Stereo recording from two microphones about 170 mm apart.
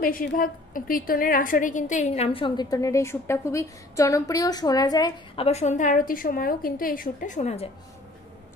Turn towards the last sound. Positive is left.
turn(degrees=40)  # may be behind; listen again after turning